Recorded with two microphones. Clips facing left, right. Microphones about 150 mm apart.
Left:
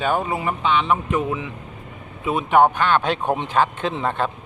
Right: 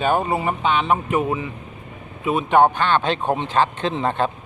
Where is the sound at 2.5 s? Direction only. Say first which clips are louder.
Even; 10° left (ahead or behind).